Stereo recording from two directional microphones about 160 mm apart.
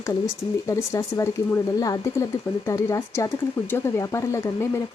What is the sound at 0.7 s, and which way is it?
A woman's voice, 20° left (ahead or behind).